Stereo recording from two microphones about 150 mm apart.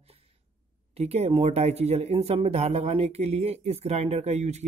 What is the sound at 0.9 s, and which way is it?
Speech, 45° right (ahead or behind).